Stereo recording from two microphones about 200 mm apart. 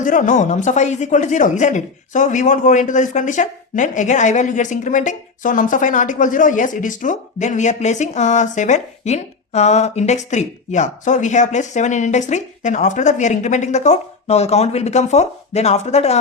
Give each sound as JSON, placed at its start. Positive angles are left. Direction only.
{"t": 0.0, "sound": "a woman's voice", "side_deg": 40}